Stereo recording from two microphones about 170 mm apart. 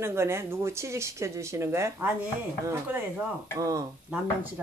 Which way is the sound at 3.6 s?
15° right (ahead or behind).